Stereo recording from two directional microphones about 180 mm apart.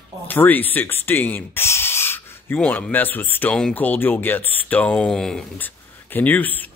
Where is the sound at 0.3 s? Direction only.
10° left (ahead or behind).